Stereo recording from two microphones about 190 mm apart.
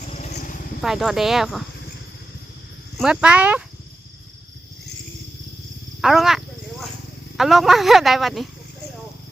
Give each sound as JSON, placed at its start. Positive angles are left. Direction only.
{"t": 0.1, "sound": "vehicle", "side_deg": 35}
{"t": 0.8, "sound": "speech", "side_deg": 0}
{"t": 3.0, "sound": "speech", "side_deg": -5}
{"t": 6.0, "sound": "speech", "side_deg": 0}